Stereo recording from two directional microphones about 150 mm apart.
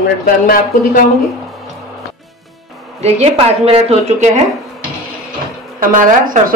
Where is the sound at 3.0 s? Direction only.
45° right (ahead or behind).